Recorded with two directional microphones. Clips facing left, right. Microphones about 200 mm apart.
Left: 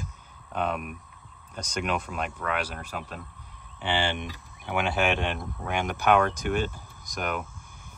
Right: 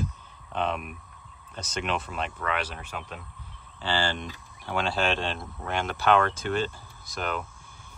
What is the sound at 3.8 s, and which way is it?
Speech, 20° left (ahead or behind).